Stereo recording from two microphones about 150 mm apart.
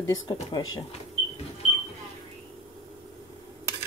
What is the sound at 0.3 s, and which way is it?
Speech, 30° left (ahead or behind).